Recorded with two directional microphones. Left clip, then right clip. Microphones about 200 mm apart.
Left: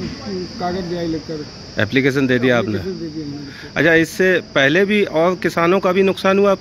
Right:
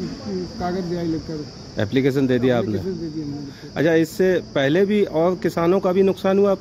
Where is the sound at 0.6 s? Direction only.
10° right (ahead or behind).